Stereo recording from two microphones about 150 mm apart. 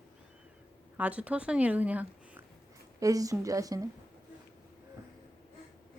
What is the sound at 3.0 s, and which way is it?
Speech, 20° right (ahead or behind).